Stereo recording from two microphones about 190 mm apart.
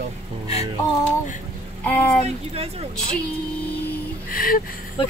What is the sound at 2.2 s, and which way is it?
Speech, 30° right (ahead or behind).